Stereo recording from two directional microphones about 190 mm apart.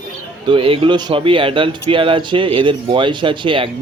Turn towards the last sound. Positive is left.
turn(degrees=-25)  # may be behind; listen again after turning